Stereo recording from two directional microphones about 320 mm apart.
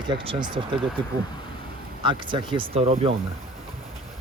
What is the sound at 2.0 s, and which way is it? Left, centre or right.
Speech, centre.